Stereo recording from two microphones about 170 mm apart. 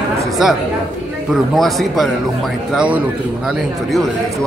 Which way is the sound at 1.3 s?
Centre (ahead or behind).